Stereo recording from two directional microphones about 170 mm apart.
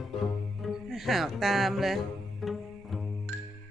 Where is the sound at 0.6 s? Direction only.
Centre (ahead or behind).